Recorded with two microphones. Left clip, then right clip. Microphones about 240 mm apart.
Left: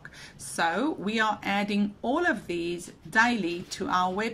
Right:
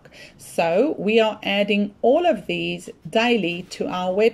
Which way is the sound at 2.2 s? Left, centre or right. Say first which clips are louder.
Right 7 dB; centre.